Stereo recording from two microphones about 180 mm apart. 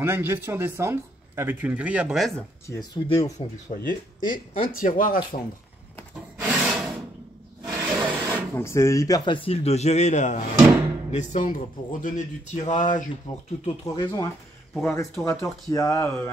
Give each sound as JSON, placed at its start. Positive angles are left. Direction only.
{"t": 0.0, "sound": "speech", "side_deg": -10}
{"t": 2.6, "sound": "speech", "side_deg": 20}
{"t": 3.7, "sound": "speech", "side_deg": 50}
{"t": 6.4, "sound": "rub", "side_deg": -5}
{"t": 7.6, "sound": "a sound", "side_deg": -10}
{"t": 8.5, "sound": "a man's voice", "side_deg": 15}
{"t": 13.8, "sound": "speech", "side_deg": 20}